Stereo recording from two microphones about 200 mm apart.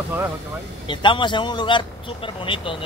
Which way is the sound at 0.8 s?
25° left (ahead or behind).